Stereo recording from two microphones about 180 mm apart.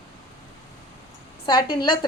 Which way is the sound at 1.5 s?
25° left (ahead or behind).